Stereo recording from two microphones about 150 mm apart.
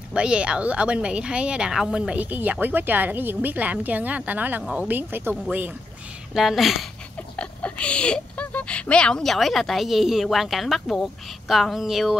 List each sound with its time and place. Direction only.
0.1 s speech: 5° right (ahead or behind)
6.3 s speech: centre (ahead or behind)